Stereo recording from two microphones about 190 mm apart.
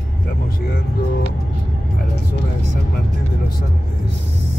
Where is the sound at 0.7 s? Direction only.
55° left (ahead or behind).